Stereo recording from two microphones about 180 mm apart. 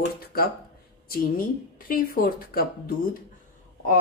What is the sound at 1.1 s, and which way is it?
Speech, 55° left (ahead or behind).